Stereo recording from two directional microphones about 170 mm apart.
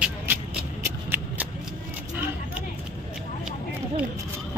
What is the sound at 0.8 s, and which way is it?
Shuffling cards, 10° right (ahead or behind).